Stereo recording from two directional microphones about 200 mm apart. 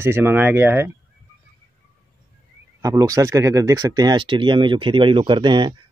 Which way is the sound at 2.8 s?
15° right (ahead or behind).